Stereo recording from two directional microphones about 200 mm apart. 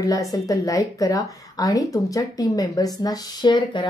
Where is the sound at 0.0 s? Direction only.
15° left (ahead or behind).